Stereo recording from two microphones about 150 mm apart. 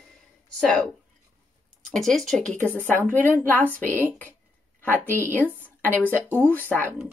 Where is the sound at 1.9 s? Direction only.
Centre (ahead or behind).